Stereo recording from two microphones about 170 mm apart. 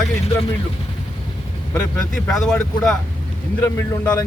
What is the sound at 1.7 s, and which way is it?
Speech, 5° left (ahead or behind).